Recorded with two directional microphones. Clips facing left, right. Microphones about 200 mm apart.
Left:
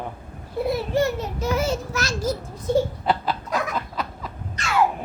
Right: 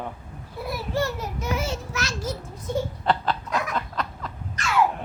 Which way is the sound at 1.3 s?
35° left (ahead or behind).